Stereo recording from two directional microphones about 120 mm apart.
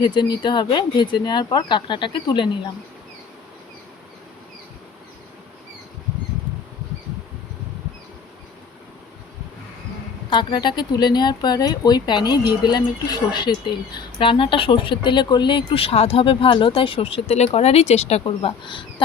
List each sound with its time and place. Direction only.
0.0 s speech: 40° left (ahead or behind)
10.2 s speech: 40° left (ahead or behind); by 18.5 s 60° left (ahead or behind)
18.6 s speech: 45° left (ahead or behind)